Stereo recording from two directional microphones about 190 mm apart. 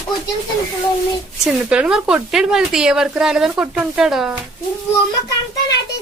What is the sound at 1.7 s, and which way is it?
A woman's voice, 5° right (ahead or behind).